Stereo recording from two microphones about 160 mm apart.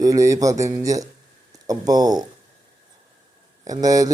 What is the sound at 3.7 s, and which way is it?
Speech, 20° right (ahead or behind).